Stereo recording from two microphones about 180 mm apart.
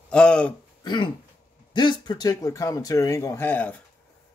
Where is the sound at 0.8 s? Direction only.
25° left (ahead or behind).